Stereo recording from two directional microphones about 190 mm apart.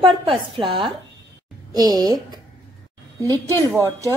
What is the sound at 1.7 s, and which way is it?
Speech, 20° right (ahead or behind).